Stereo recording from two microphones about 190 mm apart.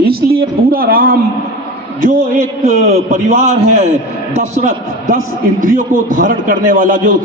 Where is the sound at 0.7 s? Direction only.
50° right (ahead or behind).